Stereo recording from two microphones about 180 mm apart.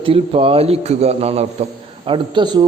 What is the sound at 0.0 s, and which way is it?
A man's voice, 30° right (ahead or behind).